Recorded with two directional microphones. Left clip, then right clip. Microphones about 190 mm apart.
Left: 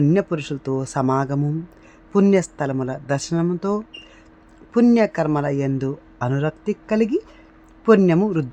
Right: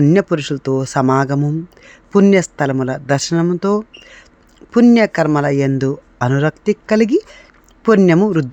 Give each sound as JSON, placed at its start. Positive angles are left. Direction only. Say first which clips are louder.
{"t": 0.0, "sound": "speech", "louder": "right 6 dB", "side_deg": -20}